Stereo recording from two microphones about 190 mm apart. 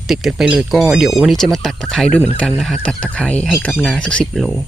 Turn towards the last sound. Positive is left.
turn(degrees=0)  # may be behind; listen again after turning